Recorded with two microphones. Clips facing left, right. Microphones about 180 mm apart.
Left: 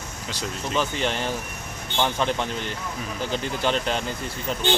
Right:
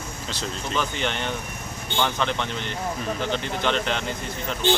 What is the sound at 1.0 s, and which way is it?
Speech, 35° left (ahead or behind).